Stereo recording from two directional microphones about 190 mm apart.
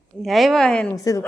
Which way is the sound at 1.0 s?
20° left (ahead or behind).